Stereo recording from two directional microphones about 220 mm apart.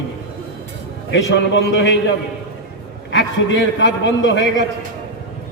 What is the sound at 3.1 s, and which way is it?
A man's voice, 55° left (ahead or behind).